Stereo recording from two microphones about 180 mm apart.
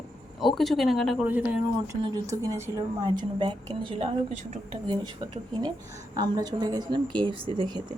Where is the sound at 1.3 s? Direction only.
10° right (ahead or behind).